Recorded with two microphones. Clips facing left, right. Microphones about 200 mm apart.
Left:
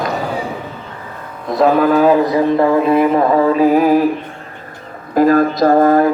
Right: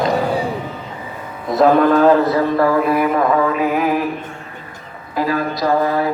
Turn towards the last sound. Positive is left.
turn(degrees=50)  # may be behind; listen again after turning